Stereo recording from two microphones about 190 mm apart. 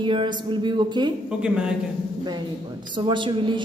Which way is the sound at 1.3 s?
5° right (ahead or behind).